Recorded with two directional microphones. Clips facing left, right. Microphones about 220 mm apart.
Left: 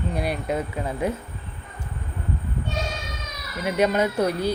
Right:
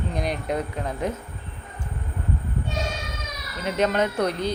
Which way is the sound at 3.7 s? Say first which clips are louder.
Left 1 dB; 10° left (ahead or behind).